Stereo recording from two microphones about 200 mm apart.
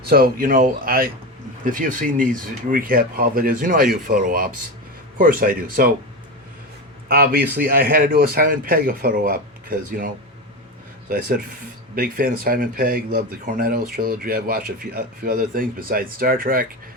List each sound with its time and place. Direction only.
0.0 s speech: 50° right (ahead or behind)
7.1 s speech: 50° right (ahead or behind)
11.1 s speech: 45° right (ahead or behind)